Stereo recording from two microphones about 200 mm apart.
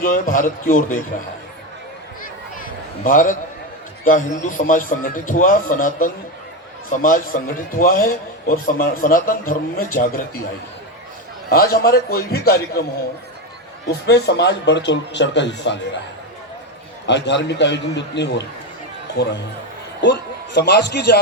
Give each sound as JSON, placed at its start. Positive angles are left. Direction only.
{"t": 0.0, "sound": "a man's voice", "side_deg": 40}
{"t": 2.6, "sound": "a sound", "side_deg": 45}
{"t": 4.0, "sound": "a man's voice", "side_deg": 40}
{"t": 11.4, "sound": "a man's voice", "side_deg": 50}
{"t": 17.1, "sound": "a man's voice", "side_deg": 60}
{"t": 20.0, "sound": "a man's voice", "side_deg": 65}